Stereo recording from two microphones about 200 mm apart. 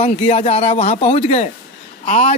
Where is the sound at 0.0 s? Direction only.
30° left (ahead or behind).